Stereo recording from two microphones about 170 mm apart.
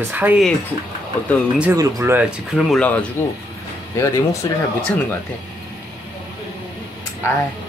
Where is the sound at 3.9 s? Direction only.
20° left (ahead or behind).